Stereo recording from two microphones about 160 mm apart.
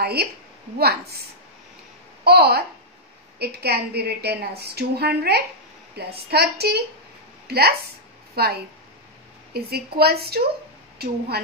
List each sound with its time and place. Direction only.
0.0 s a woman's voice: 85° right
2.2 s a woman's voice: 90° right
7.4 s a woman's voice: 80° right